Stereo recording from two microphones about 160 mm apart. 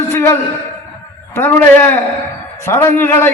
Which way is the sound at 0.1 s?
15° left (ahead or behind).